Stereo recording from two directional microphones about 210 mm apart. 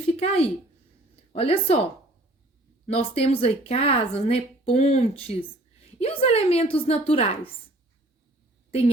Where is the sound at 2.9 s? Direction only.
30° left (ahead or behind).